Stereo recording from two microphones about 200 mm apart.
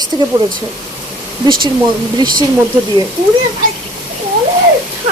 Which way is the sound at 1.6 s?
20° right (ahead or behind).